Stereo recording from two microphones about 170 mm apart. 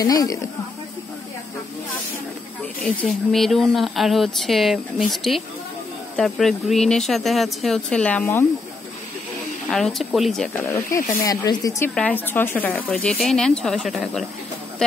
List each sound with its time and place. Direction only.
0.0 s speech: 20° left (ahead or behind)
2.8 s speech: 5° left (ahead or behind)
9.7 s speech: centre (ahead or behind)
10.6 s speech: 15° left (ahead or behind)
11.9 s speech: 10° left (ahead or behind)